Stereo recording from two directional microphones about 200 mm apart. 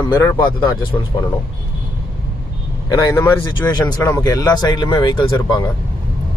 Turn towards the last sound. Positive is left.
turn(degrees=20)  # may be behind; listen again after turning